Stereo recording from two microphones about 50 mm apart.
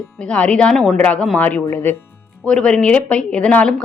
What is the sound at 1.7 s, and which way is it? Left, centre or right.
Speech, left.